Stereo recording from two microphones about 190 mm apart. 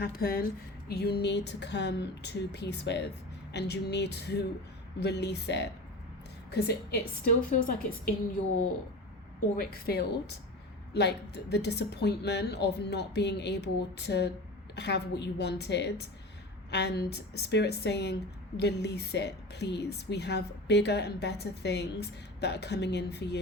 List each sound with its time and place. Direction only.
0.0 s a woman's voice: 55° left (ahead or behind)
9.6 s speech: 50° left (ahead or behind)